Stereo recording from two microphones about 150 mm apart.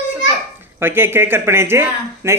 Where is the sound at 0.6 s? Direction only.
15° right (ahead or behind).